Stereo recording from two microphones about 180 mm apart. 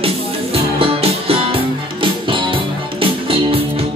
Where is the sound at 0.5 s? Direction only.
35° right (ahead or behind).